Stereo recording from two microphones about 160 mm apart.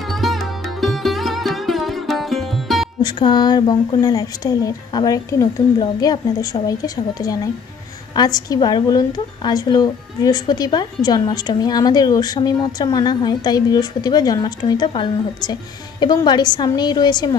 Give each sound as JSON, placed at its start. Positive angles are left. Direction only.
{"t": 0.0, "sound": "sitar", "side_deg": 0}
{"t": 3.0, "sound": "a woman's voice", "side_deg": 30}